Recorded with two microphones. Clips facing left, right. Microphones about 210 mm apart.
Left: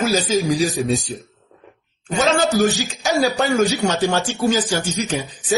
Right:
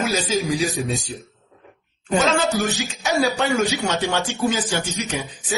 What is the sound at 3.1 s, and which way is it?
A man's voice, 35° left (ahead or behind).